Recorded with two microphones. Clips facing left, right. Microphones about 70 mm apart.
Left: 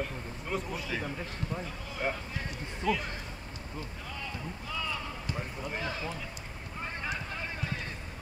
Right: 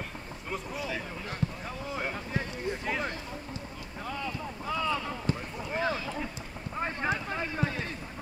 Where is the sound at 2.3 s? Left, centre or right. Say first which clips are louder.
Right 6 dB; right.